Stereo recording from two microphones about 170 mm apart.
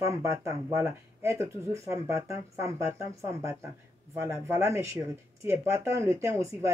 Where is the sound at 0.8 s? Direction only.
15° right (ahead or behind).